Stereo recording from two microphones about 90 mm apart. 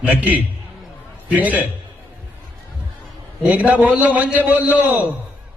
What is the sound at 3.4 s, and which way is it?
A man's voice, 15° right (ahead or behind).